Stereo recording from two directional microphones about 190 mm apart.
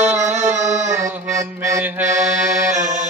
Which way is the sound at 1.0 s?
15° right (ahead or behind).